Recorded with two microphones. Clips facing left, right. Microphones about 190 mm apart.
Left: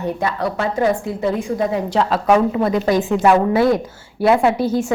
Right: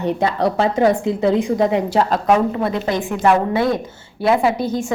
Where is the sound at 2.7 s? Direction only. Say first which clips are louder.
Left 4 dB; 25° right (ahead or behind).